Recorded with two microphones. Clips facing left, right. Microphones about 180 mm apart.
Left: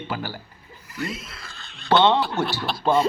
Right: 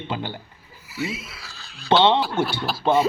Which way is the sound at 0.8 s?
5° right (ahead or behind).